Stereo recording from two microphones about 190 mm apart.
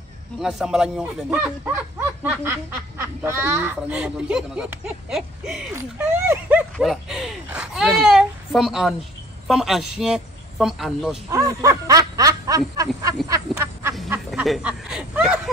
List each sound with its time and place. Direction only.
0.4 s speech: centre (ahead or behind)
5.8 s snicker: 10° right (ahead or behind)
6.8 s speech: centre (ahead or behind)
11.2 s snicker: 20° right (ahead or behind)
14.0 s speech: 5° right (ahead or behind)